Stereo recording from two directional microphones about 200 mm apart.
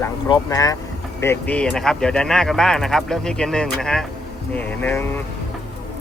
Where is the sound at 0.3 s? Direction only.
20° left (ahead or behind).